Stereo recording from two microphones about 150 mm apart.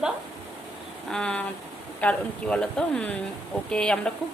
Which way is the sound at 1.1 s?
5° left (ahead or behind).